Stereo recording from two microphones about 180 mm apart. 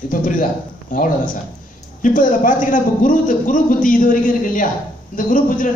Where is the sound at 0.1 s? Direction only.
50° left (ahead or behind).